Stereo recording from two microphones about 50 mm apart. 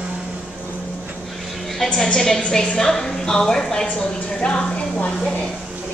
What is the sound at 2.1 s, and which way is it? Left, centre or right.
A woman's voice, centre.